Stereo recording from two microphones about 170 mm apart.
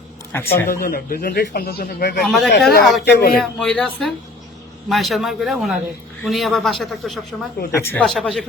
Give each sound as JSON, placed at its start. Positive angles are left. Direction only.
{"t": 0.3, "sound": "speech", "side_deg": 15}
{"t": 0.7, "sound": "speech", "side_deg": 60}
{"t": 2.2, "sound": "speech", "side_deg": 0}
{"t": 3.0, "sound": "speech", "side_deg": 70}
{"t": 3.6, "sound": "speech", "side_deg": 5}
{"t": 7.7, "sound": "speech", "side_deg": 15}
{"t": 8.0, "sound": "speech", "side_deg": 0}